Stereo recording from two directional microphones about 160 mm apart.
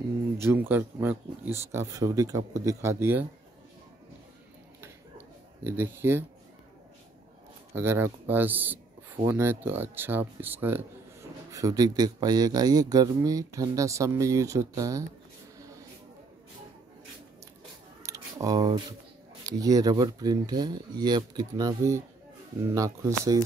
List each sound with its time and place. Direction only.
0.4 s speech: 10° right (ahead or behind)
5.6 s speech: 15° right (ahead or behind)
7.7 s speech: 15° right (ahead or behind)
11.5 s speech: 20° right (ahead or behind)
18.0 s a sound: 20° right (ahead or behind)
19.4 s speech: 25° right (ahead or behind)